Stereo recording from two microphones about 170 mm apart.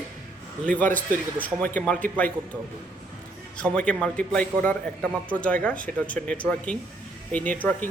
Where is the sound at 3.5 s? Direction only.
5° left (ahead or behind).